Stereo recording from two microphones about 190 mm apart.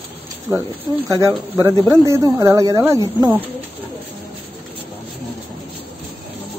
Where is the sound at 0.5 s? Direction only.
15° right (ahead or behind).